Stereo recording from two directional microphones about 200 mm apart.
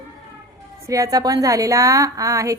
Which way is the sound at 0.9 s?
15° right (ahead or behind).